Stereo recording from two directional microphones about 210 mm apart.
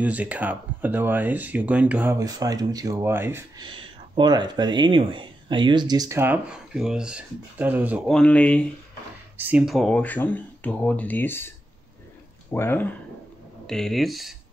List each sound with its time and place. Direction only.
0.0 s speech: 5° right (ahead or behind)
3.6 s speech: 20° right (ahead or behind)
8.1 s speech: 5° left (ahead or behind)
9.4 s speech: 5° right (ahead or behind)